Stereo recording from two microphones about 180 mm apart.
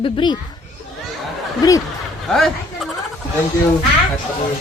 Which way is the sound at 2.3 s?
Centre (ahead or behind).